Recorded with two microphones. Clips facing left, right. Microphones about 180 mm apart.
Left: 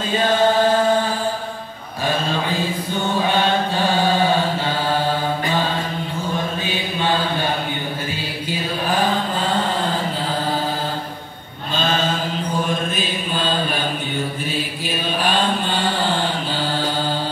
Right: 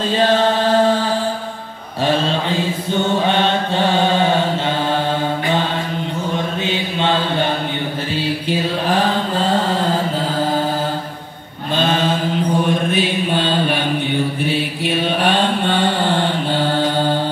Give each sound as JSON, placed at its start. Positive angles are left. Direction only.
{"t": 3.3, "sound": "mantra", "side_deg": -20}
{"t": 12.9, "sound": "mantra", "side_deg": -65}